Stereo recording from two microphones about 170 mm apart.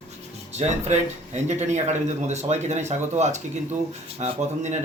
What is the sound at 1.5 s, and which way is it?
Speech, 40° right (ahead or behind).